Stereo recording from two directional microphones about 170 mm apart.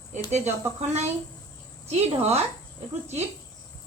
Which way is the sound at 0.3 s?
40° right (ahead or behind).